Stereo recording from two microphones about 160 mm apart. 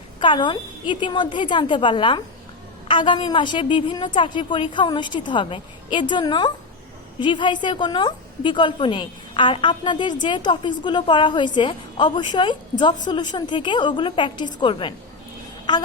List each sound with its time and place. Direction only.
0.2 s a woman's voice: 30° left (ahead or behind)